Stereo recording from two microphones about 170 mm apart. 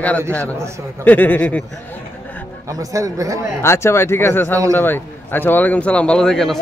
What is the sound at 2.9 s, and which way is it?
Speech, 20° right (ahead or behind).